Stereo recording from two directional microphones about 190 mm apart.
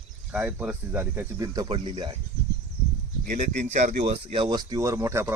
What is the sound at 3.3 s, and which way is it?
Speech, 45° right (ahead or behind).